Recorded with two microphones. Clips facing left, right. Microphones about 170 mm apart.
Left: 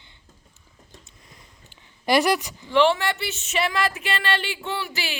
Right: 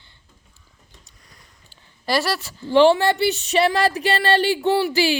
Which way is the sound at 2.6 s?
35° right (ahead or behind).